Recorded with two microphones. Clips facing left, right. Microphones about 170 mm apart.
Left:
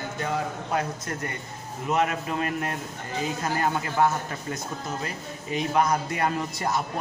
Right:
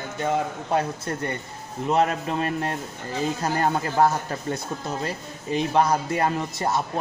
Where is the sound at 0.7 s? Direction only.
30° right (ahead or behind).